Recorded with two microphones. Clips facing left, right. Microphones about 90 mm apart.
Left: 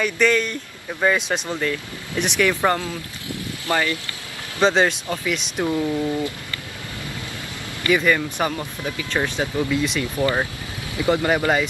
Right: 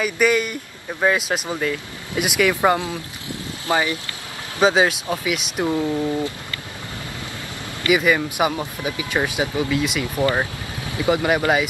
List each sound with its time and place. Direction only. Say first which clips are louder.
0.0 s speech: even; 10° right (ahead or behind)
4.6 s speech: right 1 dB; 5° right (ahead or behind)
7.9 s speech: right 1 dB; 10° right (ahead or behind)